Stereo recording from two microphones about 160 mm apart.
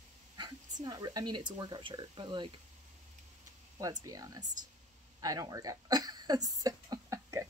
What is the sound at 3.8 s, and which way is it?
Speech, 20° right (ahead or behind).